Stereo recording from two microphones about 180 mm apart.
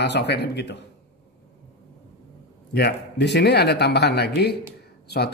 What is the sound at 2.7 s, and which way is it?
Speech, 70° left (ahead or behind).